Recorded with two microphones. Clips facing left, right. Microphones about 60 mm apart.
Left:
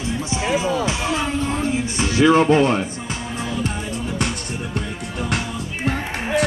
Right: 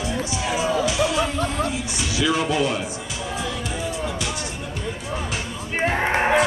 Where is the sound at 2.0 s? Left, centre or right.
Left.